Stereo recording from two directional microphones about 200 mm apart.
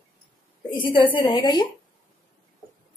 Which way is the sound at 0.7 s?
25° left (ahead or behind).